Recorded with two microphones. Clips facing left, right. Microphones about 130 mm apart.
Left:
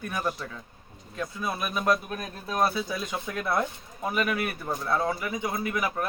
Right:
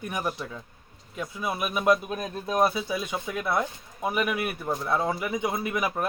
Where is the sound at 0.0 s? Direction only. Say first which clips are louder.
Even; 20° right (ahead or behind).